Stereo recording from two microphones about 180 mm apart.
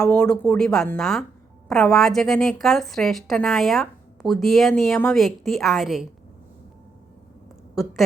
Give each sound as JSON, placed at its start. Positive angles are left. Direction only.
{"t": 0.0, "sound": "a woman's voice", "side_deg": 5}